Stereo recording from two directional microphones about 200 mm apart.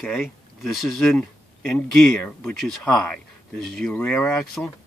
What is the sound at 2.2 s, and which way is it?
Speech, 5° left (ahead or behind).